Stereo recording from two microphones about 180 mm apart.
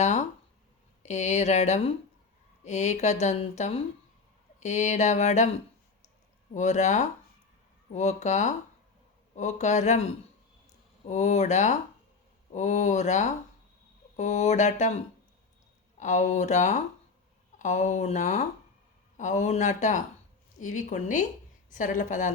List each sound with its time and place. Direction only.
0.0 s a sound: 40° left (ahead or behind)
1.0 s speech: 40° left (ahead or behind)
6.5 s speech: 40° left (ahead or behind)
11.1 s speech: 40° left (ahead or behind)
16.0 s a woman's voice: 40° left (ahead or behind)